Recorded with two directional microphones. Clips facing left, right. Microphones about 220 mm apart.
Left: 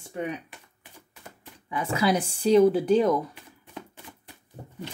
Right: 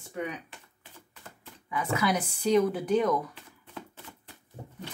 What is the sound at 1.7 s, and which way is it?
Speech, 30° left (ahead or behind).